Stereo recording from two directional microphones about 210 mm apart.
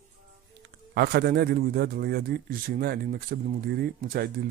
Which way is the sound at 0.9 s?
50° right (ahead or behind).